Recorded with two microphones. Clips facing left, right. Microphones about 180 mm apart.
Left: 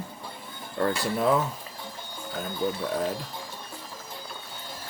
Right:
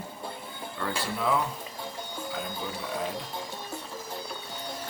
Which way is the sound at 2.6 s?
45° left (ahead or behind).